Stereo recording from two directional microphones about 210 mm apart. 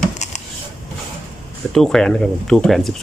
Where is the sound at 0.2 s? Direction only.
35° left (ahead or behind).